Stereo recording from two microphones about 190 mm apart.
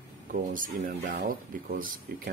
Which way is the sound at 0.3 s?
45° right (ahead or behind).